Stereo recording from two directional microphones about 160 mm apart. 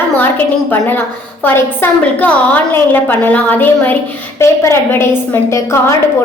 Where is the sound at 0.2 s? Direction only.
10° left (ahead or behind).